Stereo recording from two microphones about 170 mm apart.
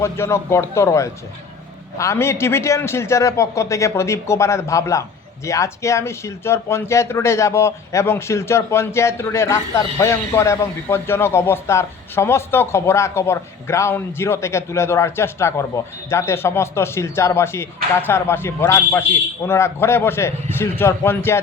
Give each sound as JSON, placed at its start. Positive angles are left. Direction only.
{"t": 0.0, "sound": "speech", "side_deg": 15}